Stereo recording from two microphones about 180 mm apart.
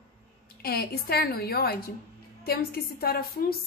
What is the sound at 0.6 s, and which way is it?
A woman's voice, 60° left (ahead or behind).